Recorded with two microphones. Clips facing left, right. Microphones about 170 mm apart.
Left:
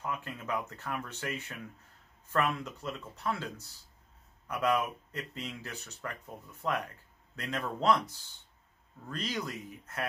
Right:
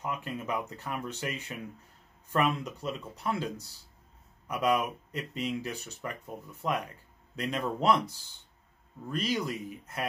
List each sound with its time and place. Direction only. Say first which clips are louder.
0.0 s speech: right 3 dB; 15° right (ahead or behind)
9.1 s speech: right 5 dB; 15° right (ahead or behind)